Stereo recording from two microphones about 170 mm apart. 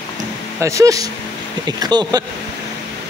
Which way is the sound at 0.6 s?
20° right (ahead or behind).